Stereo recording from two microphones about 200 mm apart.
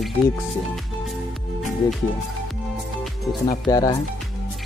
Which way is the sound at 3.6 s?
20° left (ahead or behind).